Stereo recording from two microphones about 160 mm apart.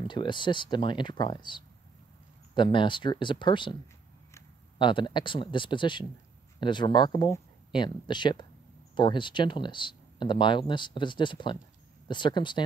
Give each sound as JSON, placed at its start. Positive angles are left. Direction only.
{"t": 0.0, "sound": "speech", "side_deg": 30}
{"t": 4.7, "sound": "speech", "side_deg": 30}